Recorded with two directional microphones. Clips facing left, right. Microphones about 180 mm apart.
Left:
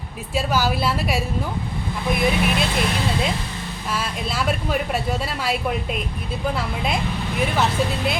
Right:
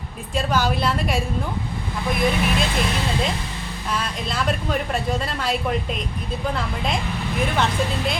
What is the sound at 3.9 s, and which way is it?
Speech, 5° left (ahead or behind).